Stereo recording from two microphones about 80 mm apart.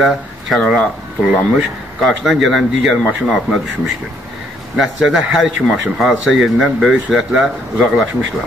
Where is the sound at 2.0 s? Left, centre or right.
Centre.